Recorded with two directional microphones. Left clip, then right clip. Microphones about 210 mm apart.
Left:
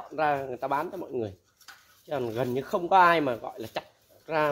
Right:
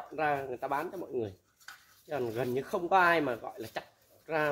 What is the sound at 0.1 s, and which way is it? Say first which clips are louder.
Speech: left 5 dB; 30° left (ahead or behind).